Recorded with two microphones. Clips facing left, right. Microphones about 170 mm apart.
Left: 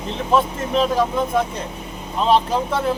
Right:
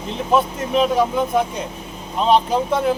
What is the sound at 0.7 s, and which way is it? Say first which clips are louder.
Speech: right 2 dB; 5° right (ahead or behind).